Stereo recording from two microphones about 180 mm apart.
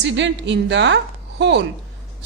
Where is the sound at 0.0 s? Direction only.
80° right.